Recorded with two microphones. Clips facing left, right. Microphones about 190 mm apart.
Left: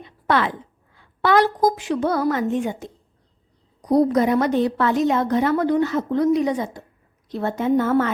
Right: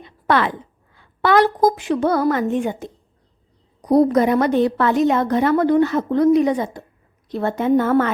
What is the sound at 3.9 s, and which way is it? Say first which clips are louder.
A woman's voice: right 2 dB; 55° right (ahead or behind).